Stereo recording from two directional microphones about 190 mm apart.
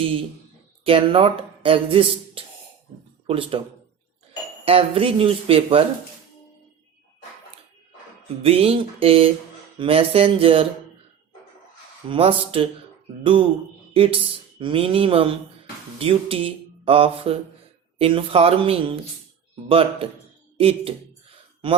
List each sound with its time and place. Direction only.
0.9 s speech: 30° right (ahead or behind)
4.6 s speech: 30° right (ahead or behind)
8.4 s speech: 30° right (ahead or behind)
12.0 s speech: 30° right (ahead or behind)
13.9 s speech: 30° right (ahead or behind)